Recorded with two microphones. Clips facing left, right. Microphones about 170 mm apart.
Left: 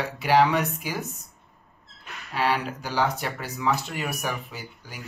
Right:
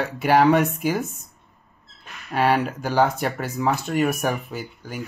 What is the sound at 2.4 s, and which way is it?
Speech, 50° right (ahead or behind).